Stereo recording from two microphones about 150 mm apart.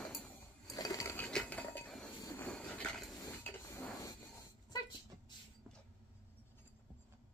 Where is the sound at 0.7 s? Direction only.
25° left (ahead or behind); by 2.0 s 5° left (ahead or behind).